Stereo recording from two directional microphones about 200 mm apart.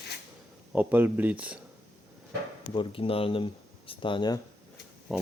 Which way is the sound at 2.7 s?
25° left (ahead or behind).